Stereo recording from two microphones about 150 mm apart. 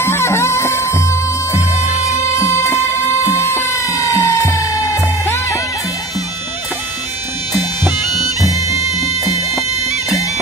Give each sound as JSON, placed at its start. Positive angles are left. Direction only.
{"t": 0.0, "sound": "music", "side_deg": 20}
{"t": 8.5, "sound": "music", "side_deg": -20}